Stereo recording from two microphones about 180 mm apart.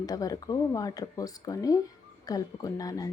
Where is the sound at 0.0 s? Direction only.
20° left (ahead or behind).